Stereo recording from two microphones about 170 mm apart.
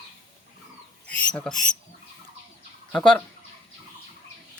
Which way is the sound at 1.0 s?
5° left (ahead or behind).